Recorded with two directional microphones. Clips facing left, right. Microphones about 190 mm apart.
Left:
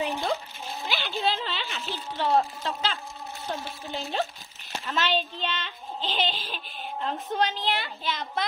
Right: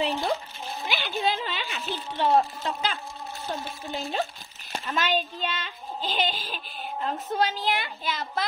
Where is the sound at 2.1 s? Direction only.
20° right (ahead or behind).